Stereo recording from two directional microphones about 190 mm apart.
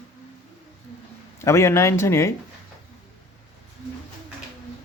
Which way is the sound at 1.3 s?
15° left (ahead or behind).